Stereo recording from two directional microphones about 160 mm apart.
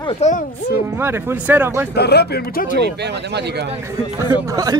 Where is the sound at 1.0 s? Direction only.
15° right (ahead or behind).